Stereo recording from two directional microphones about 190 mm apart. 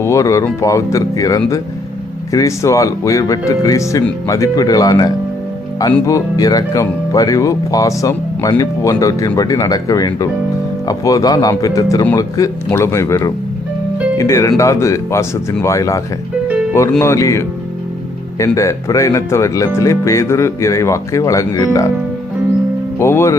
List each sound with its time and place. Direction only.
0.0 s speech: 15° left (ahead or behind)
17.0 s speech: 15° left (ahead or behind)
23.0 s speech: 15° left (ahead or behind)